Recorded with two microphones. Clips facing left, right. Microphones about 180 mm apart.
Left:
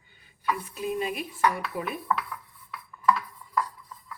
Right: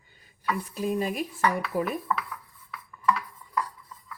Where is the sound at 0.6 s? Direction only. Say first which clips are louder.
Right 2 dB; 40° right (ahead or behind).